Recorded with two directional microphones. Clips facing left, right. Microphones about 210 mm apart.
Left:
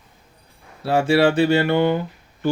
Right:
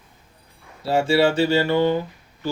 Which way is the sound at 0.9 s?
60° left (ahead or behind).